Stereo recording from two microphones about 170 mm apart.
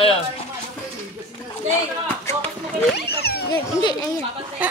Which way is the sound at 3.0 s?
70° left (ahead or behind).